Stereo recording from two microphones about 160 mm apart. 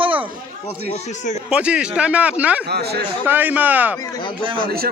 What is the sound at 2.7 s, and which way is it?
Speech, 90° right.